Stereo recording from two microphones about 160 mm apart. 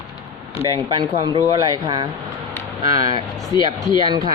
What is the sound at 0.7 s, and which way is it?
A woman's voice, 25° right (ahead or behind).